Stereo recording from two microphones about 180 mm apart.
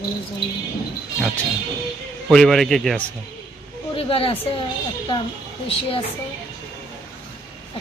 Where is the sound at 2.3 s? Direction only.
Centre (ahead or behind).